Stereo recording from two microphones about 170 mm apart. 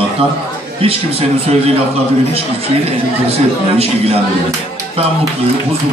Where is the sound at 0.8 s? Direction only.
35° right (ahead or behind).